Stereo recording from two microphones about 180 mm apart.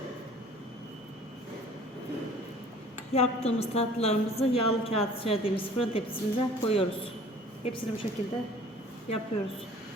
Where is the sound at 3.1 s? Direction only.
35° left (ahead or behind).